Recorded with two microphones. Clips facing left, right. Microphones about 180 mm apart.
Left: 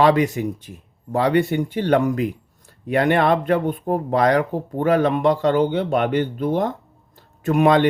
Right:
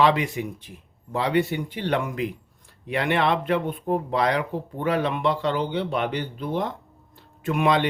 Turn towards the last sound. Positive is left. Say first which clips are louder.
# left 6 dB
turn(degrees=45)  # may be behind; listen again after turning